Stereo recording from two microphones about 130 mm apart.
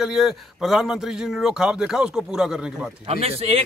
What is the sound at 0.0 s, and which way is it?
A man's voice, centre (ahead or behind).